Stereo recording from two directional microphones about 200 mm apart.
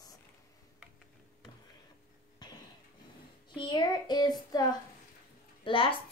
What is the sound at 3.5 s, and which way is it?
Speech, 20° left (ahead or behind).